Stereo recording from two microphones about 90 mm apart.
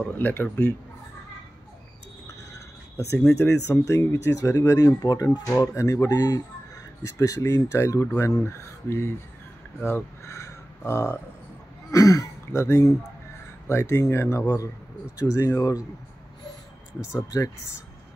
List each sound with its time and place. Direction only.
0.0 s speech: 20° left (ahead or behind)
2.2 s a sound: 35° left (ahead or behind)
3.3 s speech: 30° left (ahead or behind)
11.9 s speech: 40° left (ahead or behind)
17.0 s speech: 35° left (ahead or behind)